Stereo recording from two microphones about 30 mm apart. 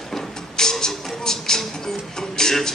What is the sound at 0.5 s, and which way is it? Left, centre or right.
Music, centre.